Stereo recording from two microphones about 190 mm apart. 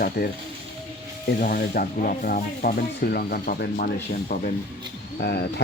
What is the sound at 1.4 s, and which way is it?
Speech, 50° left (ahead or behind).